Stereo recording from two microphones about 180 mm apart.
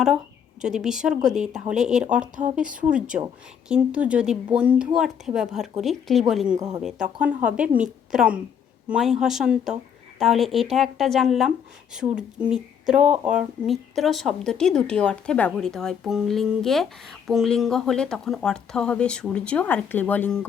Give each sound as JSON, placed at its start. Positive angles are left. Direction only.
{"t": 0.6, "sound": "speech", "side_deg": -5}